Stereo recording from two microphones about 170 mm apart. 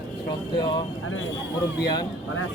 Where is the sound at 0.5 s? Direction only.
25° left (ahead or behind).